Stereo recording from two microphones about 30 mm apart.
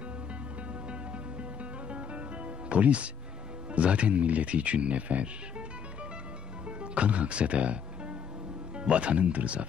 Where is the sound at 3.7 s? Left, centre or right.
Right.